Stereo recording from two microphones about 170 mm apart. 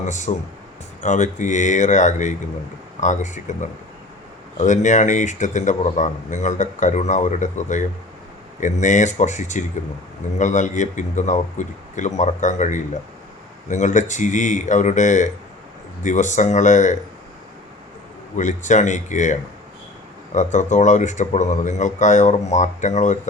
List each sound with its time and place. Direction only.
0.0 s speech: 45° left (ahead or behind)
18.3 s speech: 45° left (ahead or behind)